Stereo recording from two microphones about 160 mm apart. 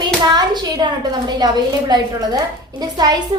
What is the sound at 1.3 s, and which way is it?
A woman's voice, 25° right (ahead or behind).